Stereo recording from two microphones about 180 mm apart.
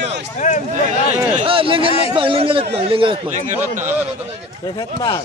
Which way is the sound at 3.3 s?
45° right (ahead or behind).